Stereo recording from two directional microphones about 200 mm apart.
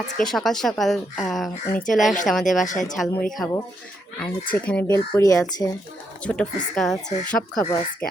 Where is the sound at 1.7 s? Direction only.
40° left (ahead or behind).